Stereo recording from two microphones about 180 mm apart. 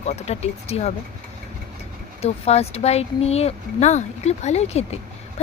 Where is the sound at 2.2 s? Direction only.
35° left (ahead or behind).